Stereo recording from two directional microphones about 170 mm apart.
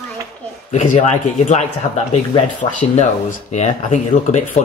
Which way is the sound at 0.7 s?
45° left (ahead or behind).